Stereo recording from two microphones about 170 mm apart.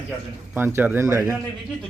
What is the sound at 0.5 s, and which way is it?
Speech, 10° right (ahead or behind).